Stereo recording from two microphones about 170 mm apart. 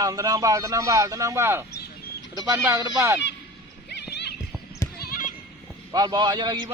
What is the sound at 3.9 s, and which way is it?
Horse, 80° left.